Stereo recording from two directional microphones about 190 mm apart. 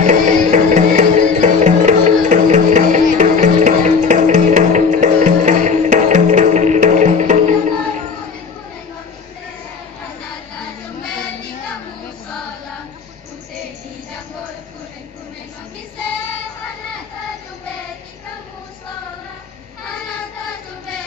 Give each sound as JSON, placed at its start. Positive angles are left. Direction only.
{"t": 0.0, "sound": "music", "side_deg": -40}